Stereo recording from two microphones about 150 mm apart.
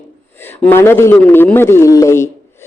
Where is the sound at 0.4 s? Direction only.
15° left (ahead or behind).